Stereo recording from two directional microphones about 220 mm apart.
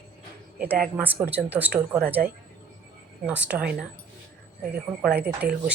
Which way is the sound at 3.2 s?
5° right (ahead or behind).